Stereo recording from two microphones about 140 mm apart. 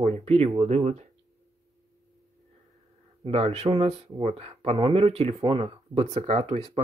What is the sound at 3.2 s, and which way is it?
Speech, 45° right (ahead or behind).